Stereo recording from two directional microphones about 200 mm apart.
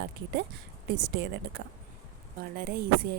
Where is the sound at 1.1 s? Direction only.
55° right (ahead or behind).